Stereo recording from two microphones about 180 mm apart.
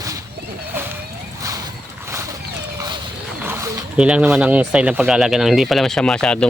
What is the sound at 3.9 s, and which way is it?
Speech, 5° right (ahead or behind).